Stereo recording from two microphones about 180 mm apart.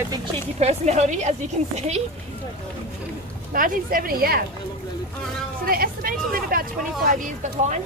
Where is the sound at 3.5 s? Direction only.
50° right (ahead or behind).